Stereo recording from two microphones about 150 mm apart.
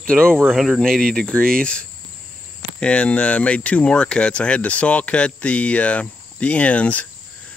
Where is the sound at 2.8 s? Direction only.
10° left (ahead or behind).